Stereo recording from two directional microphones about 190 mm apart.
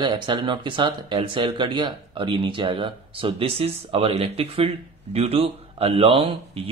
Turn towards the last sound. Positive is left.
turn(degrees=-30)  # may be behind; listen again after turning